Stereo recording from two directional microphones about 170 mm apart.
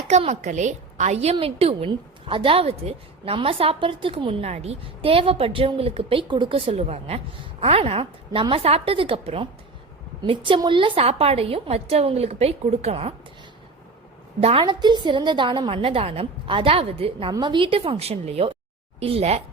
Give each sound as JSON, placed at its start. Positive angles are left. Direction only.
{"t": 0.1, "sound": "a woman's voice", "side_deg": -40}
{"t": 14.4, "sound": "a woman's voice", "side_deg": -30}